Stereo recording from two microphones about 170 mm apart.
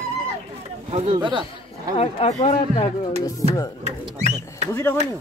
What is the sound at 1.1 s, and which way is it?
Speech, 30° right (ahead or behind).